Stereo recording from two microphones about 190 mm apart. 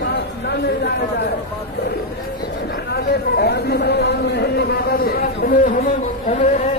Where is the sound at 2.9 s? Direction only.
55° left (ahead or behind).